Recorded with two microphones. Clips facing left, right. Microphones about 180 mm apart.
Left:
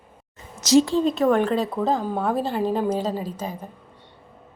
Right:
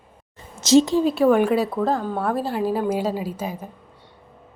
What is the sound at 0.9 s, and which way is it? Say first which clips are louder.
Speech: right 2 dB; 10° right (ahead or behind).